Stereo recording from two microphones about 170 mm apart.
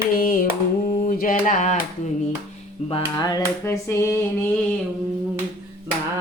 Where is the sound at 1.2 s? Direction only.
50° left (ahead or behind).